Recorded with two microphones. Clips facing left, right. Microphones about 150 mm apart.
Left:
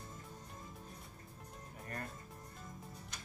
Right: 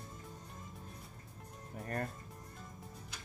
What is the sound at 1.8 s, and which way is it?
Speech, 45° right (ahead or behind).